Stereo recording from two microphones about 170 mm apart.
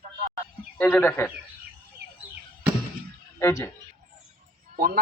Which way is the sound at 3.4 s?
15° left (ahead or behind).